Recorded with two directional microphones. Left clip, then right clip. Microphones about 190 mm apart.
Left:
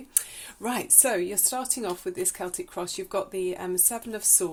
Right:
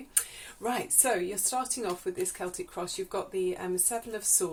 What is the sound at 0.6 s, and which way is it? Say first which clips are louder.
Speech: left 3 dB; 55° left (ahead or behind).